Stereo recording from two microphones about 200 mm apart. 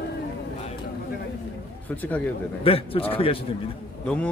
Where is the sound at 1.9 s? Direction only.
10° left (ahead or behind).